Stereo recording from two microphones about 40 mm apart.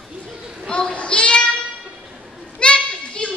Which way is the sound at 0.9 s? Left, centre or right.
Left.